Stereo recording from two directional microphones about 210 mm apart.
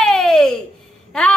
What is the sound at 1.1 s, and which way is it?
Speech, 5° left (ahead or behind).